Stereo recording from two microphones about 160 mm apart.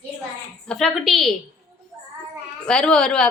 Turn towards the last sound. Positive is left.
turn(degrees=5)  # may be behind; listen again after turning